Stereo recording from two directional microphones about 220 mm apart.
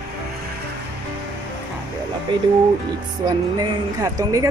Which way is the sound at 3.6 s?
15° right (ahead or behind).